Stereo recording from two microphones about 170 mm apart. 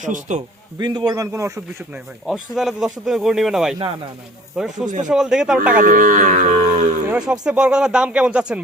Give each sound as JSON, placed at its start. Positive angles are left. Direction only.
{"t": 0.0, "sound": "speech", "side_deg": -45}
{"t": 0.8, "sound": "speech", "side_deg": -25}
{"t": 2.2, "sound": "speech", "side_deg": 0}
{"t": 5.7, "sound": "speech", "side_deg": -55}
{"t": 7.1, "sound": "speech", "side_deg": -5}